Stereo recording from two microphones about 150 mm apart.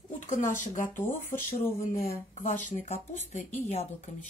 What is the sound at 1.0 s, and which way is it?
Speech, 15° left (ahead or behind).